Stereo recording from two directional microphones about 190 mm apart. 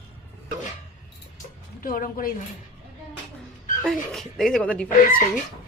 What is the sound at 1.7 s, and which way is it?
Speech, 50° left (ahead or behind).